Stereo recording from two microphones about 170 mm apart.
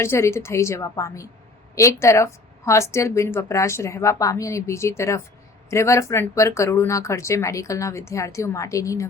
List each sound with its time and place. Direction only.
0.0 s a woman's voice: 15° left (ahead or behind)